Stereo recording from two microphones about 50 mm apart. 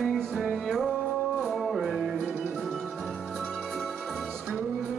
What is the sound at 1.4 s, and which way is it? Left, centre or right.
Music, centre.